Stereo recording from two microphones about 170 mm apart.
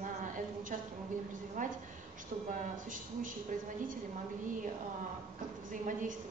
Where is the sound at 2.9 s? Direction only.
50° right (ahead or behind).